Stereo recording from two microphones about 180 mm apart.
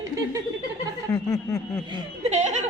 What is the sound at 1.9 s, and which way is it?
Speech, 35° right (ahead or behind).